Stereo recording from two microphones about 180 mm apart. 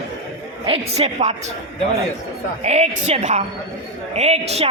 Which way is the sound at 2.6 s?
35° right (ahead or behind).